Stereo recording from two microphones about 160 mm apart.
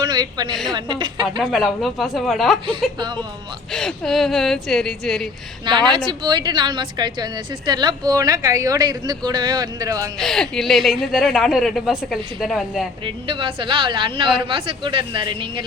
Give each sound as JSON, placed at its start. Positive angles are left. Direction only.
{"t": 0.0, "sound": "a woman's voice", "side_deg": -25}
{"t": 1.4, "sound": "speech", "side_deg": 0}
{"t": 3.7, "sound": "speech", "side_deg": 5}
{"t": 5.9, "sound": "a woman's voice", "side_deg": -30}
{"t": 10.2, "sound": "speech", "side_deg": 5}
{"t": 13.1, "sound": "a woman's voice", "side_deg": -30}